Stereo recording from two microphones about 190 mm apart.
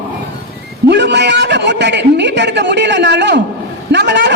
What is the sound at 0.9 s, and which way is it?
A man's voice, 65° right (ahead or behind).